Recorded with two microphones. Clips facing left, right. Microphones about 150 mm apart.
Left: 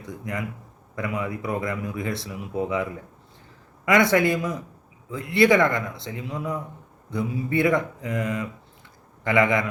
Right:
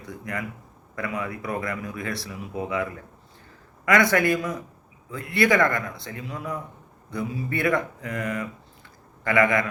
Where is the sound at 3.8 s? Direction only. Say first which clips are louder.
Left 1 dB; 20° left (ahead or behind).